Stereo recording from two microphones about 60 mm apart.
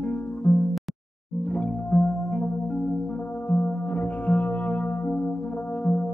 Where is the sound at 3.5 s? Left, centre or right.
Left.